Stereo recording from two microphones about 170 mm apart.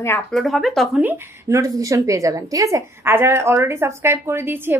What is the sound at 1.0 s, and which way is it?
Speech, 20° right (ahead or behind).